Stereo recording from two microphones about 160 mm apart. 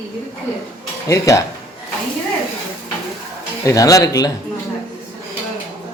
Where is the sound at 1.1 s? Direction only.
20° left (ahead or behind).